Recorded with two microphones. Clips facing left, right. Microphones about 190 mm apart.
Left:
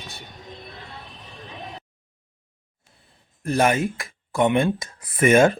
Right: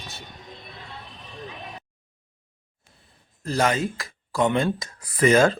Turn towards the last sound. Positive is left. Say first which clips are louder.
# left 2 dB
turn(degrees=25)  # may be behind; listen again after turning